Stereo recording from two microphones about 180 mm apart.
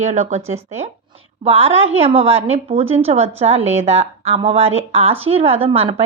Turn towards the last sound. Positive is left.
turn(degrees=-30)  # may be behind; listen again after turning